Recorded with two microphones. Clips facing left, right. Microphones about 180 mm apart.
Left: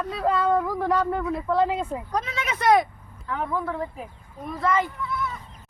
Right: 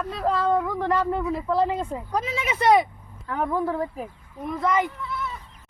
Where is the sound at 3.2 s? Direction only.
40° right (ahead or behind).